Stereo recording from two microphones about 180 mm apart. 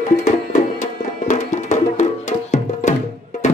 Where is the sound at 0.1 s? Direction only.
40° left (ahead or behind).